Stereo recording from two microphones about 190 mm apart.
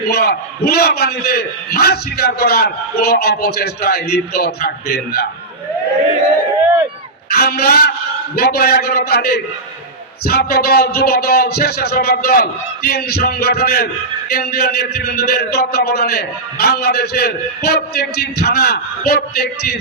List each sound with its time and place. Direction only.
0.1 s a man's voice: 55° left (ahead or behind)
7.3 s a man's voice: 55° left (ahead or behind)